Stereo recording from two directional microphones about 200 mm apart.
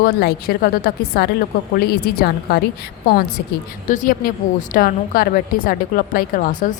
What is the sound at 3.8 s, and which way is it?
A woman's voice, 40° left (ahead or behind).